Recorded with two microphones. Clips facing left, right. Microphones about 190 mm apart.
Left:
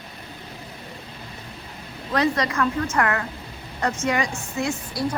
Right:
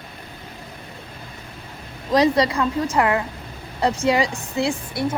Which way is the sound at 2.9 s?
15° right (ahead or behind).